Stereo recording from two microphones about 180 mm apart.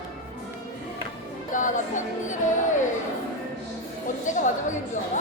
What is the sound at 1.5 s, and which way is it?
Music, 45° left (ahead or behind).